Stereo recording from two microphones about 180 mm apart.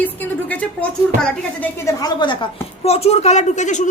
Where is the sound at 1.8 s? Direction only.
25° left (ahead or behind).